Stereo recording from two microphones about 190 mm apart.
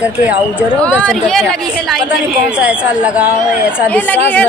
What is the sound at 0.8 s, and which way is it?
A woman's voice, 10° left (ahead or behind).